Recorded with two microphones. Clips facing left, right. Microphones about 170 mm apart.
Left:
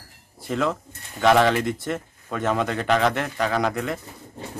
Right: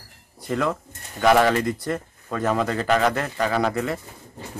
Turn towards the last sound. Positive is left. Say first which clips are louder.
# right 1 dB
turn(degrees=-5)  # may be behind; listen again after turning